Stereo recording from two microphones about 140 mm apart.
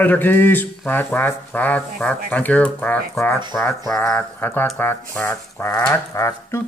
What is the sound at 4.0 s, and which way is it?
Speech, 15° left (ahead or behind).